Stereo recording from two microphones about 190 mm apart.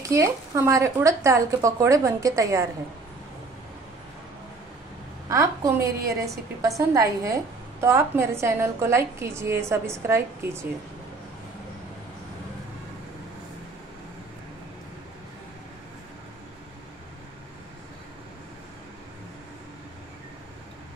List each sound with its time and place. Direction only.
0.1 s a woman's voice: 15° right (ahead or behind)
5.3 s a woman's voice: 15° right (ahead or behind)